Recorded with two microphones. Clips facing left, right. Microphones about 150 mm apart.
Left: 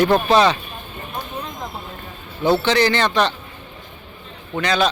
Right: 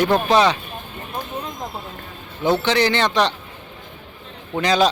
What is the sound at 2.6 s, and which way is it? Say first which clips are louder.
Speech: left 1 dB; 15° right (ahead or behind).